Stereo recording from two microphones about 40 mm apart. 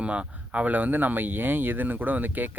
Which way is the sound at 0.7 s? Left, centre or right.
Right.